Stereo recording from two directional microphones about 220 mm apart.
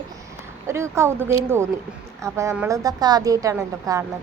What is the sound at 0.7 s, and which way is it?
A woman's voice, 10° right (ahead or behind).